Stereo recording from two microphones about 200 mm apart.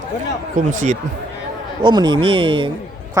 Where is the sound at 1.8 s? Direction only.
20° right (ahead or behind).